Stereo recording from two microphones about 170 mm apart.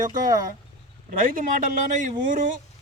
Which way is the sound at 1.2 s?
55° right (ahead or behind).